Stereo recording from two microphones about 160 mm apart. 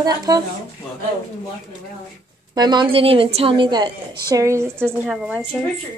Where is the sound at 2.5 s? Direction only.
25° right (ahead or behind).